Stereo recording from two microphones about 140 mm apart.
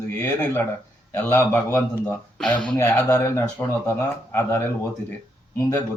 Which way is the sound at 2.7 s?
20° left (ahead or behind).